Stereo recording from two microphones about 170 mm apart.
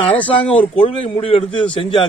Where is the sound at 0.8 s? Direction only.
35° left (ahead or behind).